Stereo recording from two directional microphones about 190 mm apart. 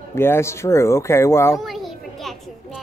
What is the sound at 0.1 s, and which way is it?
Speech, 15° left (ahead or behind).